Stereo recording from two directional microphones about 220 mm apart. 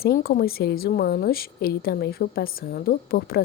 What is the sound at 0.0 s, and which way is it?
A woman's voice, 45° left (ahead or behind).